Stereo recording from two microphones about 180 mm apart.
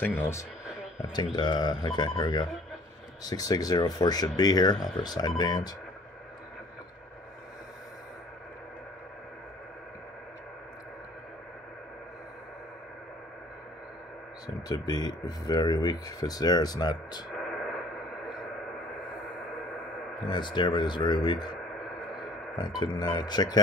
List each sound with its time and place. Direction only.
0.0 s speech: 10° left (ahead or behind)
1.1 s speech: 25° left (ahead or behind)
14.7 s speech: 20° left (ahead or behind)
20.2 s speech: 25° left (ahead or behind)
22.6 s speech: 25° left (ahead or behind)